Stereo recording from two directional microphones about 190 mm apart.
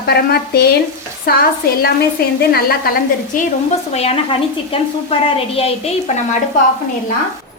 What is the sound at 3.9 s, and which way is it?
A woman's voice, 35° left (ahead or behind).